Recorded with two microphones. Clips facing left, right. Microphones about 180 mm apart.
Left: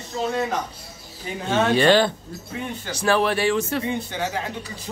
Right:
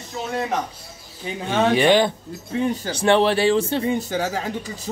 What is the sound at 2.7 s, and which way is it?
Speech, 35° right (ahead or behind).